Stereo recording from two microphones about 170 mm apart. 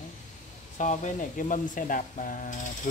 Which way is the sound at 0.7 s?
45° left (ahead or behind).